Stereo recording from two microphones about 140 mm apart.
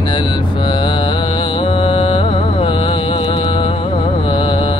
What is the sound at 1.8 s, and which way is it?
Music, 35° left (ahead or behind).